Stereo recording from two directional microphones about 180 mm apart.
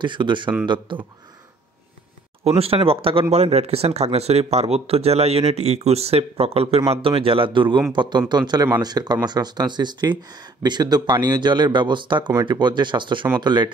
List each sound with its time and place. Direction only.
0.0 s speech: 25° right (ahead or behind)
2.4 s speech: 35° right (ahead or behind)